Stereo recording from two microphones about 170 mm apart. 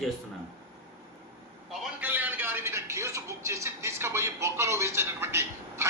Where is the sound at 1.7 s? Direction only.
5° right (ahead or behind).